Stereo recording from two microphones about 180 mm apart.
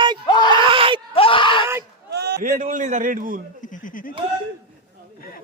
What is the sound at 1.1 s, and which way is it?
Screaming, 30° left (ahead or behind).